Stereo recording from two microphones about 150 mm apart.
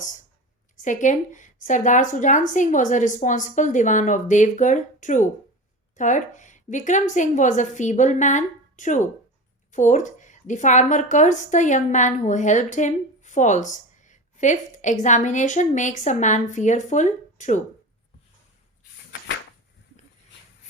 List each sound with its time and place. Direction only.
0.8 s a woman's voice: 55° left (ahead or behind)